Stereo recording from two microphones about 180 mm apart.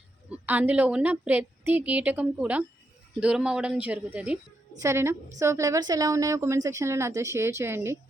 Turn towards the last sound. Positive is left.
turn(degrees=-15)  # may be behind; listen again after turning